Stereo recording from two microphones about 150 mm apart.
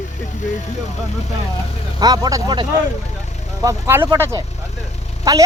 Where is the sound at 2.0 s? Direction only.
25° right (ahead or behind).